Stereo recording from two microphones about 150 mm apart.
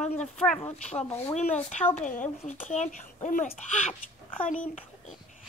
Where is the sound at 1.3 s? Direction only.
50° left (ahead or behind).